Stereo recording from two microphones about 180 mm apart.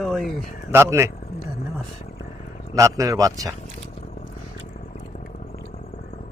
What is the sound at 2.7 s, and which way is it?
Speech, 20° right (ahead or behind).